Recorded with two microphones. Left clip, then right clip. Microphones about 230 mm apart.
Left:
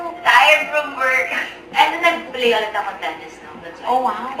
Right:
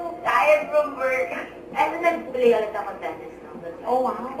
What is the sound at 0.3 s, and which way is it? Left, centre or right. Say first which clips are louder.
A woman's voice: left 7 dB; centre.